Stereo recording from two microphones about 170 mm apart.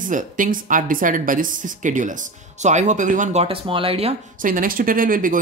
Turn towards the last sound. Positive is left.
turn(degrees=-55)  # may be behind; listen again after turning